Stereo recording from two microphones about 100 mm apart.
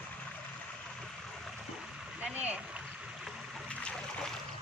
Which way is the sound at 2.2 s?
15° right (ahead or behind).